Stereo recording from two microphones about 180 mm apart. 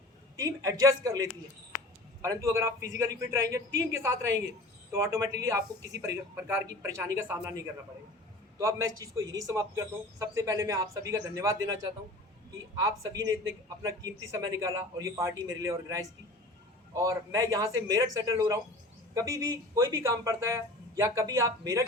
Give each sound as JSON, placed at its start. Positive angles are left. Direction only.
{"t": 0.3, "sound": "speech", "side_deg": -15}
{"t": 13.8, "sound": "a man's voice", "side_deg": -20}